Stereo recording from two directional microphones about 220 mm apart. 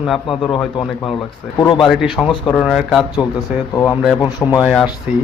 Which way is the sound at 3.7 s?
15° left (ahead or behind).